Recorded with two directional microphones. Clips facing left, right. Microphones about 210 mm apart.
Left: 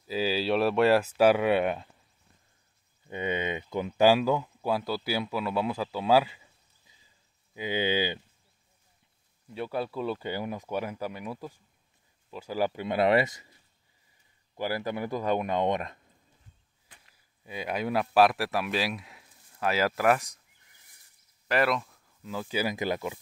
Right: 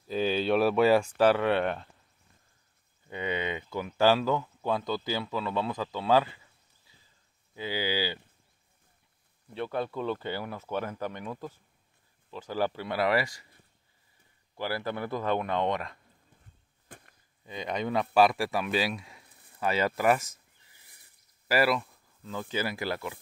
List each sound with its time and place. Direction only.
0.0 s speech: 5° left (ahead or behind)
3.1 s speech: 20° left (ahead or behind)
7.5 s speech: 20° left (ahead or behind)
9.5 s speech: 10° left (ahead or behind)
14.6 s speech: 15° left (ahead or behind)
17.1 s a sound: 5° left (ahead or behind)
18.1 s speech: centre (ahead or behind)
19.2 s a sound: 60° right (ahead or behind)
19.6 s speech: centre (ahead or behind)
21.5 s speech: 5° right (ahead or behind)
22.2 s speech: 10° left (ahead or behind)